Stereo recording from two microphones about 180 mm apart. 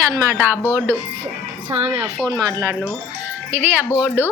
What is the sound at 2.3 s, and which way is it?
A woman's voice, 20° right (ahead or behind).